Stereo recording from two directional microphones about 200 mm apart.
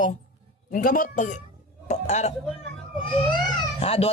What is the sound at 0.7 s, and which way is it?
A man's voice, 45° left (ahead or behind).